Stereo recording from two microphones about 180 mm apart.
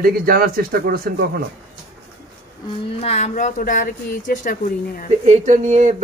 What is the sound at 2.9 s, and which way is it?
Speech, 35° left (ahead or behind).